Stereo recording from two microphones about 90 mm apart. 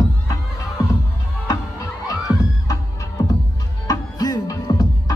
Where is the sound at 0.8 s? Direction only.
40° left (ahead or behind).